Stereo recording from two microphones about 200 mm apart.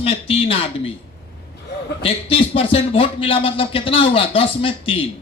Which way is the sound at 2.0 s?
25° left (ahead or behind).